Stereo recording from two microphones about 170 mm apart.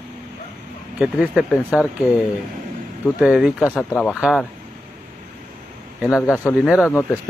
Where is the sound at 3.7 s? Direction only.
15° left (ahead or behind).